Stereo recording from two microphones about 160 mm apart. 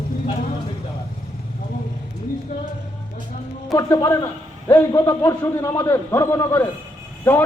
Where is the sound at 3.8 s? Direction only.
20° left (ahead or behind).